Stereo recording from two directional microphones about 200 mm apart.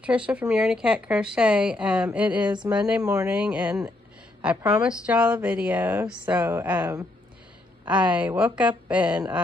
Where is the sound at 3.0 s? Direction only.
15° right (ahead or behind).